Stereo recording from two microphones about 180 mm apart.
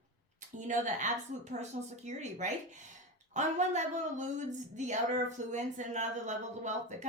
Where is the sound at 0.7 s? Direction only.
45° right (ahead or behind).